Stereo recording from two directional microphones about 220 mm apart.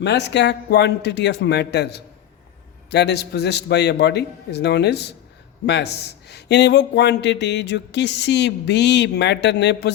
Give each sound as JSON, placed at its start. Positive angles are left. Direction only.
{"t": 0.0, "sound": "a man's voice", "side_deg": 50}